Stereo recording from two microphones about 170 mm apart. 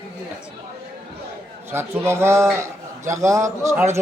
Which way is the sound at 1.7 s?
15° right (ahead or behind).